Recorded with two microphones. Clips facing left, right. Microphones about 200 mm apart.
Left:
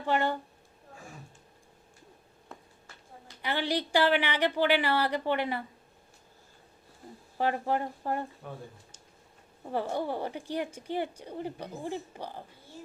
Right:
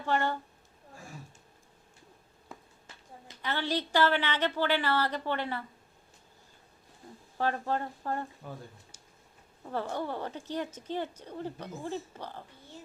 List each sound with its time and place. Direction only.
0.0 s a woman's voice: 15° left (ahead or behind)
3.4 s a woman's voice: 15° left (ahead or behind)
7.3 s a woman's voice: 15° left (ahead or behind)
9.6 s a woman's voice: 15° left (ahead or behind)